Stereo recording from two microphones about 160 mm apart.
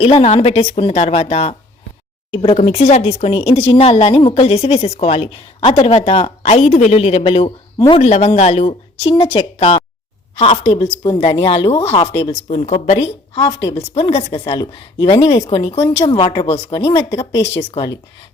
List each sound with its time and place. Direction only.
0.0 s speech: 40° left (ahead or behind)
10.7 s speech: 25° left (ahead or behind)
12.3 s speech: 45° left (ahead or behind)
15.1 s speech: 25° left (ahead or behind)
15.4 s speech: 45° left (ahead or behind); by 16.5 s 25° left (ahead or behind)
16.5 s speech: 40° left (ahead or behind)
16.8 s speech: 25° left (ahead or behind)